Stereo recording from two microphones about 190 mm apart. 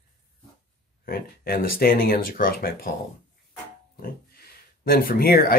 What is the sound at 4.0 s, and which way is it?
Speech, 50° left (ahead or behind).